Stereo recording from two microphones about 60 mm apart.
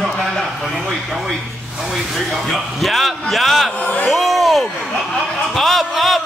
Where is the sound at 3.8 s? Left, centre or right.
Left.